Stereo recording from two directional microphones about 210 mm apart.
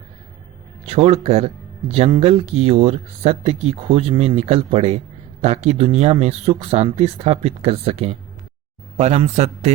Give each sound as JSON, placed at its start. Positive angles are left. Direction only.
{"t": 0.9, "sound": "a man's voice", "side_deg": -30}